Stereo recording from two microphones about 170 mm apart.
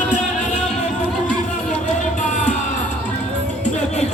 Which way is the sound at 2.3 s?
45° left (ahead or behind).